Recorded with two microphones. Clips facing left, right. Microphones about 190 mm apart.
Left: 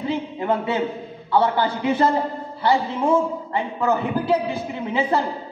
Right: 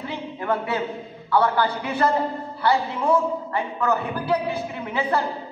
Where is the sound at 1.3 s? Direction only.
20° left (ahead or behind).